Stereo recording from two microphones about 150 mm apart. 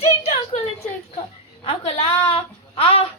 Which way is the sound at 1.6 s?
40° left (ahead or behind).